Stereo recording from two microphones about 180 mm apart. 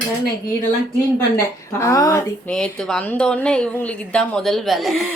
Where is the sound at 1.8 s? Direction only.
20° left (ahead or behind).